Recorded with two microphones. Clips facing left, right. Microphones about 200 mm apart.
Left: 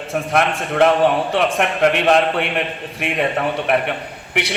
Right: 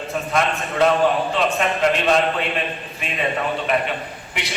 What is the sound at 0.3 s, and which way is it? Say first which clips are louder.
A man's voice: left 3 dB; 65° left (ahead or behind).